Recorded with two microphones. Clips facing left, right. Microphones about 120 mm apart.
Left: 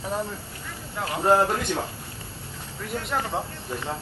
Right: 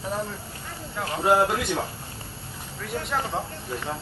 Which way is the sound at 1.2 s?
10° right (ahead or behind).